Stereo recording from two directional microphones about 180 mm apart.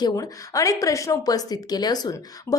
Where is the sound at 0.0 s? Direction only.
20° left (ahead or behind).